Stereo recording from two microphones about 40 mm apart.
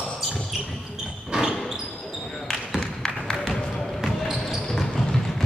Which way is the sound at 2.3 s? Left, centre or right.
Centre.